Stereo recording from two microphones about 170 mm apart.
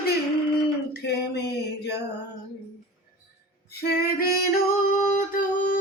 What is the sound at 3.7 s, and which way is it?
Music, 65° left (ahead or behind).